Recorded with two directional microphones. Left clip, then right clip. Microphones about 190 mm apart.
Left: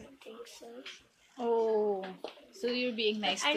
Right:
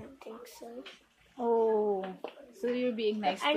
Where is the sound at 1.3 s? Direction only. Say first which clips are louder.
Right 2 dB; centre (ahead or behind).